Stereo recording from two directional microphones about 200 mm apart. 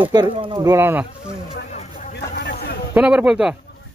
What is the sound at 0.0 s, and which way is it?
Speech, 25° right (ahead or behind).